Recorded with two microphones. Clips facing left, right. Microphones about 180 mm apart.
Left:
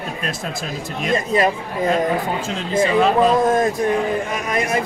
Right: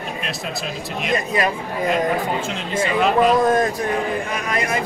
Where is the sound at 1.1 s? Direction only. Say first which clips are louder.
Left 3 dB; 25° left (ahead or behind).